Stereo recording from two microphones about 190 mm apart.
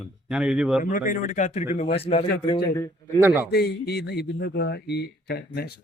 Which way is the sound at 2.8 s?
15° left (ahead or behind).